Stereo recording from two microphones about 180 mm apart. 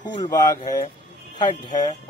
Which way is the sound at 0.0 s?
25° left (ahead or behind).